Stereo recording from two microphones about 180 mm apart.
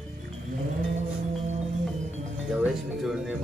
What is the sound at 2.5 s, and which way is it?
Music, centre (ahead or behind).